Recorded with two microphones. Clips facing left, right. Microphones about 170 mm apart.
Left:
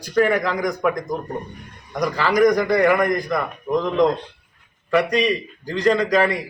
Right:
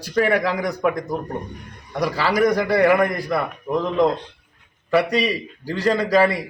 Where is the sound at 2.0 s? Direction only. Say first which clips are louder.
Left 2 dB; 5° right (ahead or behind).